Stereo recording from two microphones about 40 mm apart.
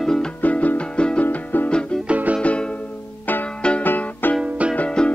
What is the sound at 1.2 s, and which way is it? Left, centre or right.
Music, left.